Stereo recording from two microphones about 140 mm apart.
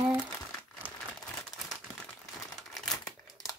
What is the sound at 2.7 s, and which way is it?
Crumpling, 5° left (ahead or behind).